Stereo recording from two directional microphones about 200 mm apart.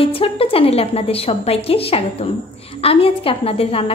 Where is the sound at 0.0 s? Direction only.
30° left (ahead or behind).